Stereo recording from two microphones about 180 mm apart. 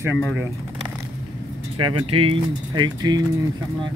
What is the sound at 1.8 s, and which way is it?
Speech, 30° right (ahead or behind).